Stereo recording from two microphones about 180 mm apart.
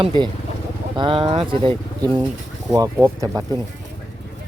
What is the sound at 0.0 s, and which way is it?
Speech, 25° right (ahead or behind).